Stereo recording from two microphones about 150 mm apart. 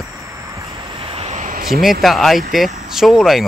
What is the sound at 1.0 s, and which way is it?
Vehicle, 40° right (ahead or behind).